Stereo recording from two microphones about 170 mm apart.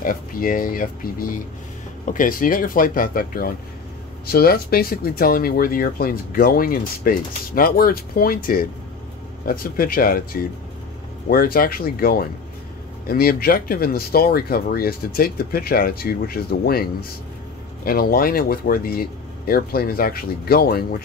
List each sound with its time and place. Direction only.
0.0 s speech: 55° left (ahead or behind)
17.8 s speech: 60° left (ahead or behind)